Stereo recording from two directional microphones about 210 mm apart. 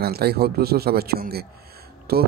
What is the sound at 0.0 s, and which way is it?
Speech, 50° right (ahead or behind).